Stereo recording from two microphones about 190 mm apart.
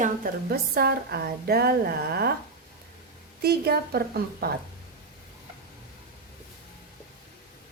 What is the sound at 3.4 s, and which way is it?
A woman's voice, 55° right (ahead or behind).